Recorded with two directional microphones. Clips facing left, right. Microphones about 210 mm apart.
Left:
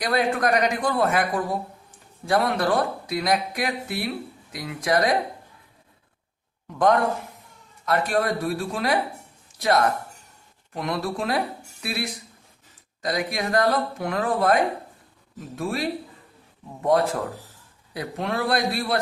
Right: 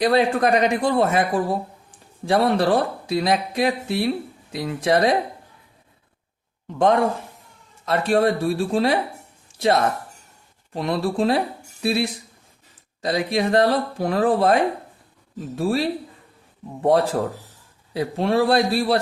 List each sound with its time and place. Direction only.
0.0 s speech: 30° right (ahead or behind)
6.7 s a man's voice: 25° right (ahead or behind)